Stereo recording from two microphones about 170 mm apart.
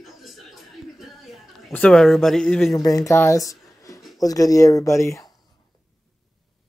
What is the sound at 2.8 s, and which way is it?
Speech, 20° left (ahead or behind).